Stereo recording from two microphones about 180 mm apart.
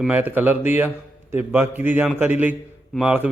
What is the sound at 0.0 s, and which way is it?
A man's voice, 10° right (ahead or behind).